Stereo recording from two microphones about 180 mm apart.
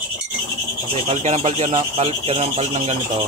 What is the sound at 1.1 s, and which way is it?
Speech, 35° right (ahead or behind).